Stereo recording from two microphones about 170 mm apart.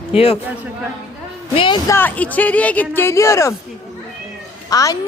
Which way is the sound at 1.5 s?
30° left (ahead or behind).